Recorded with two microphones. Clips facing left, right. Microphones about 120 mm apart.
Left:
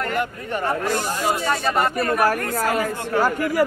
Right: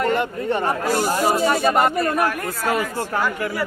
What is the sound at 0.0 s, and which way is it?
Speech, 25° right (ahead or behind).